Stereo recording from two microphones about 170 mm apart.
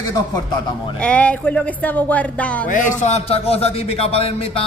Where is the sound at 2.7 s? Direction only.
50° left (ahead or behind).